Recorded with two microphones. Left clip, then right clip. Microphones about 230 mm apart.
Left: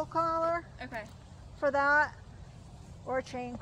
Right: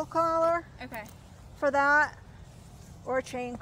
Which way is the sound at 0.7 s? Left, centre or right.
Centre.